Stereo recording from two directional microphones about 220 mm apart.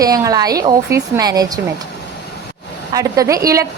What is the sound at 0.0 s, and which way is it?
A woman's voice, 15° right (ahead or behind).